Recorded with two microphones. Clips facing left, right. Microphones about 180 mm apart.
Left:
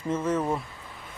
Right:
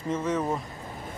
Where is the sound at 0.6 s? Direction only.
45° right (ahead or behind).